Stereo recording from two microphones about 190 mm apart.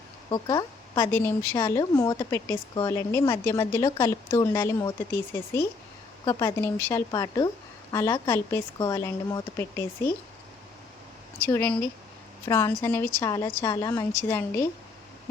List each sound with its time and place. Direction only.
0.3 s speech: 20° left (ahead or behind)
11.3 s speech: 10° left (ahead or behind)